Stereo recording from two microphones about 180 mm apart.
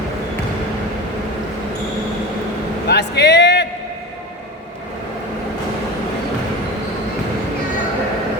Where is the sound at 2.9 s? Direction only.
70° left (ahead or behind).